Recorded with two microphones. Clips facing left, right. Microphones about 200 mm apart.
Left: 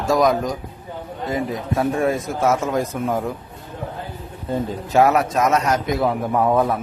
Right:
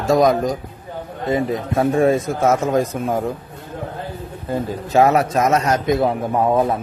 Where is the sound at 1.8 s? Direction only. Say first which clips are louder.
Right 5 dB; 25° right (ahead or behind).